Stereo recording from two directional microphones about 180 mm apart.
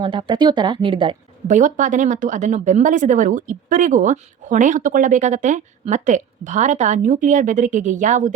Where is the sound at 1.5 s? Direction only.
45° right (ahead or behind).